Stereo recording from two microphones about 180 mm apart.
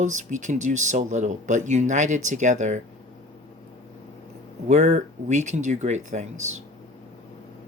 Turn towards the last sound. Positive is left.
turn(degrees=-40)  # may be behind; listen again after turning